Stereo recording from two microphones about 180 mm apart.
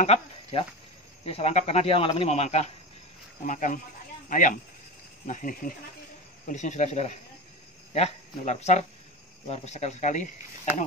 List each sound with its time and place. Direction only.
0.0 s speech: 35° left (ahead or behind)